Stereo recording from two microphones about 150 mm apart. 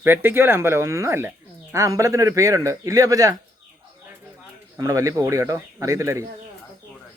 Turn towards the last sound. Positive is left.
turn(degrees=-20)  # may be behind; listen again after turning